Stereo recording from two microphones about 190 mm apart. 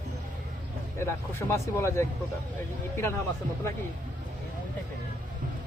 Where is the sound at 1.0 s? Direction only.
15° left (ahead or behind).